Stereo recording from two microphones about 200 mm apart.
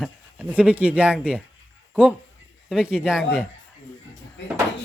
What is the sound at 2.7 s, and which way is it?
Speech, 5° right (ahead or behind).